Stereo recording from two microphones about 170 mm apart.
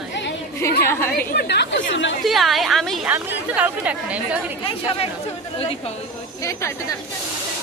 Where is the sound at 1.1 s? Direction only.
75° left (ahead or behind).